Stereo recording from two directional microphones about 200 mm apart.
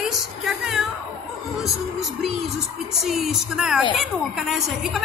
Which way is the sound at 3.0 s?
Centre (ahead or behind).